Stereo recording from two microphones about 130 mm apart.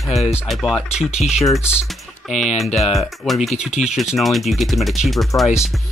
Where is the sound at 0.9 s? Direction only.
55° left (ahead or behind).